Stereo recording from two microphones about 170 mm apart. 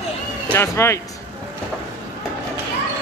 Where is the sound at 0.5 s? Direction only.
15° left (ahead or behind).